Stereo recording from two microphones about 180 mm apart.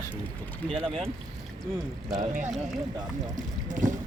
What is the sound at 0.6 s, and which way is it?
Speech, 30° right (ahead or behind).